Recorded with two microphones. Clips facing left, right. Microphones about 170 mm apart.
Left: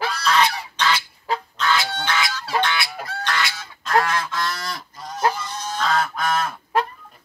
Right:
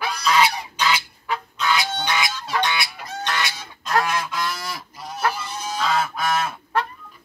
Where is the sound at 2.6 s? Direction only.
20° right (ahead or behind).